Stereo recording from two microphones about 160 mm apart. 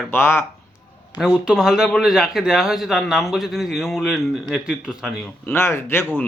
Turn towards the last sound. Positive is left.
turn(degrees=15)  # may be behind; listen again after turning